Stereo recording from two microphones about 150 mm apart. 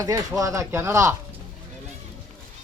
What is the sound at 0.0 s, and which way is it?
Speech, 20° right (ahead or behind).